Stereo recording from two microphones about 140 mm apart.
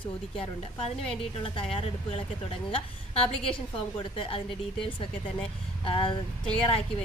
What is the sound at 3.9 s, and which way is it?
A woman's voice, 40° left (ahead or behind).